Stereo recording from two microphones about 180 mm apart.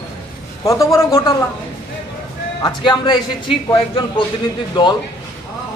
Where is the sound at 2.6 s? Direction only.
20° left (ahead or behind).